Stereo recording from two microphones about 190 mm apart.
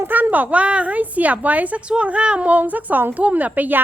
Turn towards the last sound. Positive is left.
turn(degrees=-10)  # may be behind; listen again after turning